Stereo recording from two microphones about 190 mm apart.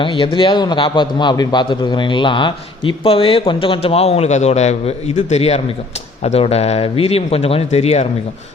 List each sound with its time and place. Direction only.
0.0 s a man's voice: 25° left (ahead or behind)